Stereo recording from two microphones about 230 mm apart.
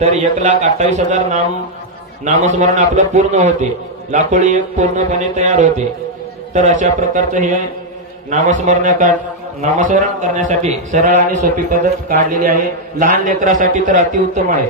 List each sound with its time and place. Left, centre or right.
0.0 s a man's voice: right